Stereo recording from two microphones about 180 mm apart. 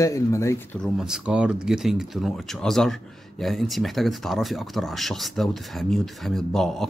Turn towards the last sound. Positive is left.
turn(degrees=0)  # may be behind; listen again after turning